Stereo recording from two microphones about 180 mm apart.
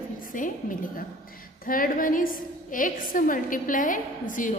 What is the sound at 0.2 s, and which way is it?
A woman's voice, 50° left (ahead or behind).